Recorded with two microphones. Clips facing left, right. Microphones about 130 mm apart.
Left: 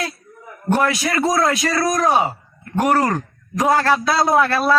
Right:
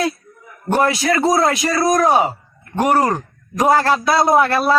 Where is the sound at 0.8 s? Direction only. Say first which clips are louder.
Right 5 dB; 30° right (ahead or behind).